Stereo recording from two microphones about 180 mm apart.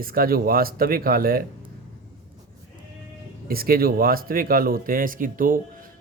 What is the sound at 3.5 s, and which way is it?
Speech, 55° right (ahead or behind).